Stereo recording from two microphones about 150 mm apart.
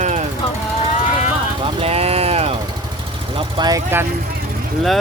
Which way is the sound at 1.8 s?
40° right (ahead or behind).